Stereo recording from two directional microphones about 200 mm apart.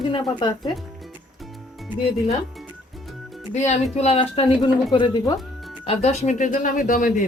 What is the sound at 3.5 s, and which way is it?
Speech, 35° left (ahead or behind).